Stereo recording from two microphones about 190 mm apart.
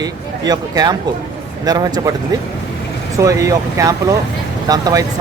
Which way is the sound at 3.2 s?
15° right (ahead or behind).